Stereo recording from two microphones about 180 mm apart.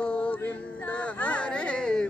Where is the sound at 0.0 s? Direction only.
5° left (ahead or behind).